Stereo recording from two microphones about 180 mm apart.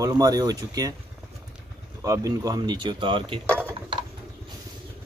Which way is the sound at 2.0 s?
20° right (ahead or behind).